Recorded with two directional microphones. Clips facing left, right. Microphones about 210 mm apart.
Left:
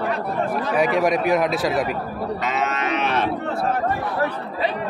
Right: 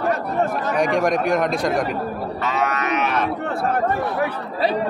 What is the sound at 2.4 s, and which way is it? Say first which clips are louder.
Cattle: right 3 dB; 20° left (ahead or behind).